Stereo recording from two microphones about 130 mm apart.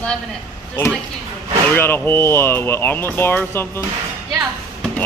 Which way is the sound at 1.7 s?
15° left (ahead or behind).